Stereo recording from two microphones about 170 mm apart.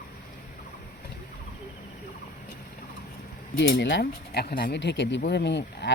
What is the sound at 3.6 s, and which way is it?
Speech, 90° left.